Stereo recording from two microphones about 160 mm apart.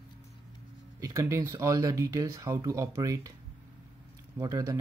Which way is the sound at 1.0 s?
20° right (ahead or behind).